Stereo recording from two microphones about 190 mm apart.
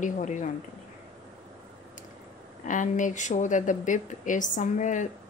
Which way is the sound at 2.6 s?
40° left (ahead or behind).